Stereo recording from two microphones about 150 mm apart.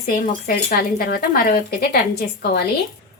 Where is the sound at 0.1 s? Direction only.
75° left (ahead or behind).